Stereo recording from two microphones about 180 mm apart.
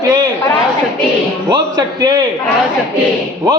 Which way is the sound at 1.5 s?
20° right (ahead or behind).